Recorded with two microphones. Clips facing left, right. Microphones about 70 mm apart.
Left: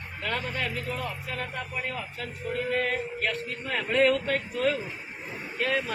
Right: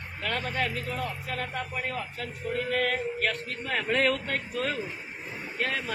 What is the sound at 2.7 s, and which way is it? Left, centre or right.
Speech, right.